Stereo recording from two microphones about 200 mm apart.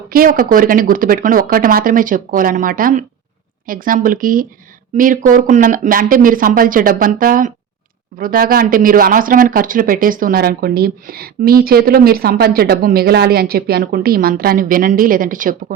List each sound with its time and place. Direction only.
0.1 s speech: 45° right (ahead or behind)